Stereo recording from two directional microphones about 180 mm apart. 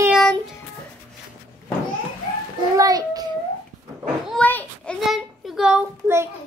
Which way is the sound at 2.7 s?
20° right (ahead or behind).